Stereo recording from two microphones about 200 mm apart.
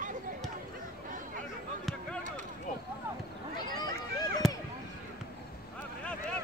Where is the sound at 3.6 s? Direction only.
20° left (ahead or behind).